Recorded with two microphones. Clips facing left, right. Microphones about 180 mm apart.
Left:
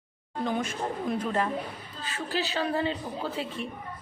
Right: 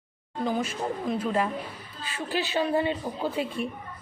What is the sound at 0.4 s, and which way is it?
A woman's voice, 5° right (ahead or behind).